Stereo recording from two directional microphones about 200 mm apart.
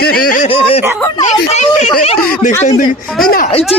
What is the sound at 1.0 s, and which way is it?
Speech, 15° left (ahead or behind).